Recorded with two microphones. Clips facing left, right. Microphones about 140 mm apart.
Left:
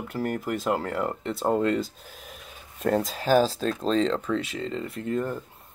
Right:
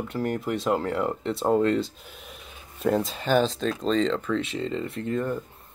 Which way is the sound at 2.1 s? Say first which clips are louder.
Even; 40° left (ahead or behind).